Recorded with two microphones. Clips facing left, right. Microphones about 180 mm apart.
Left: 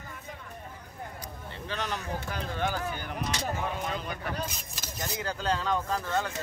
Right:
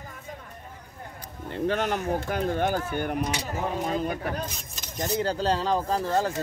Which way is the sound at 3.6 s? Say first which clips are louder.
Right 6 dB; 35° right (ahead or behind).